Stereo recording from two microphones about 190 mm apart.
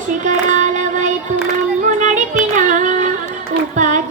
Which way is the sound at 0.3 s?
40° right (ahead or behind).